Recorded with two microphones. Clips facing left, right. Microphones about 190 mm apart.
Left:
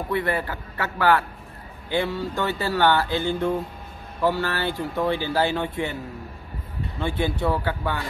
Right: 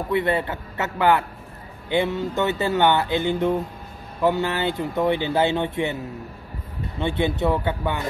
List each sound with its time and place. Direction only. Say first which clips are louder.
0.1 s speech: right 3 dB; 20° right (ahead or behind)
7.0 s speech: right 3 dB; 20° right (ahead or behind)